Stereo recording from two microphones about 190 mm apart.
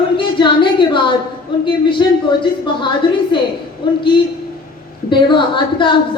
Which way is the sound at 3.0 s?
25° left (ahead or behind).